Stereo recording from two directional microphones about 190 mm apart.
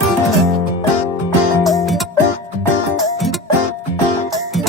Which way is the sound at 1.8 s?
Centre (ahead or behind).